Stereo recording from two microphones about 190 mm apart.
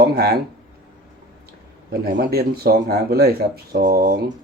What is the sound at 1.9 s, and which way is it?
Speech, 55° right (ahead or behind).